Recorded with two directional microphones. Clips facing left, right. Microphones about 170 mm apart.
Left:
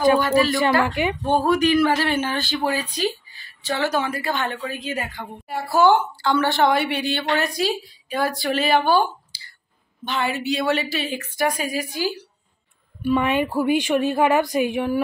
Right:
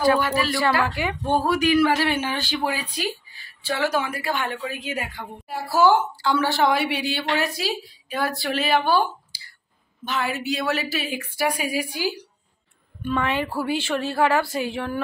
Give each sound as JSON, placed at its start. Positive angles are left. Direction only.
{"t": 0.8, "sound": "a woman's voice", "side_deg": 20}
{"t": 1.4, "sound": "a woman's voice", "side_deg": -10}
{"t": 13.0, "sound": "a woman's voice", "side_deg": 15}